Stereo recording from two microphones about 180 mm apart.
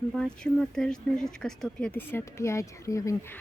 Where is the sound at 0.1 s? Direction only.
5° left (ahead or behind).